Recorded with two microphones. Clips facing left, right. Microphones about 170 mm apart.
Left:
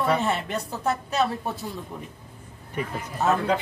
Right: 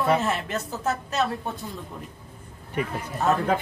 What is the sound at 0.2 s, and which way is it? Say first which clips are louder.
A woman's voice: left 1 dB; centre (ahead or behind).